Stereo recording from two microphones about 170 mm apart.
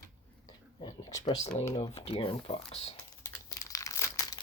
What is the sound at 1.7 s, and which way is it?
Speech, 35° left (ahead or behind).